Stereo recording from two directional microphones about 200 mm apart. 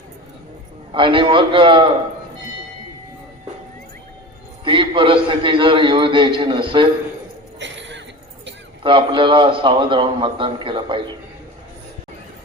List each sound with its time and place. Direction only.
0.9 s a man's voice: 25° right (ahead or behind)
4.6 s a man's voice: 25° right (ahead or behind)
7.6 s a sound: 65° right (ahead or behind)
8.8 s a man's voice: 25° right (ahead or behind)